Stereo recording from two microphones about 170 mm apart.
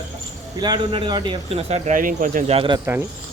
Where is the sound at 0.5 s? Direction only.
25° right (ahead or behind).